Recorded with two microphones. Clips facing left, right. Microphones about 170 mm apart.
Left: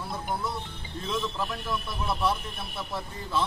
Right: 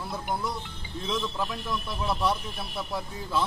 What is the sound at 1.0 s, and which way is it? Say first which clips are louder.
A man's voice: even; centre (ahead or behind).